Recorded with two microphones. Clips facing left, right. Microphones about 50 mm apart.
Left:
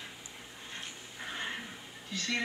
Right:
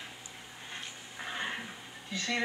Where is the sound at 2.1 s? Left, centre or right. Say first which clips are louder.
Right 1 dB; right.